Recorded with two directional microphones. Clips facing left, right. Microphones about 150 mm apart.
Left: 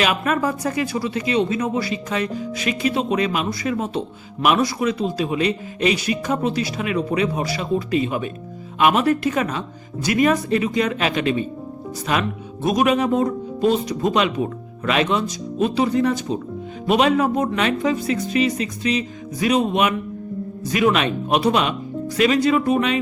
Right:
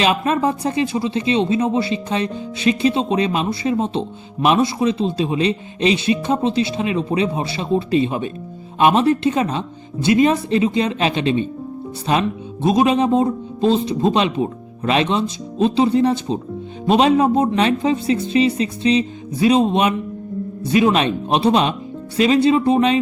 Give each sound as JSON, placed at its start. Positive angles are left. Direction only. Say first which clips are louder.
{"t": 0.0, "sound": "speech", "louder": "right 3 dB", "side_deg": -25}